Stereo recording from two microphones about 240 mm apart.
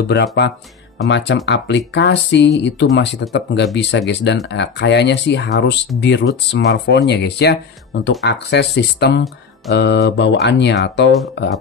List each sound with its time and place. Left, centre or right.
0.1 s speech: left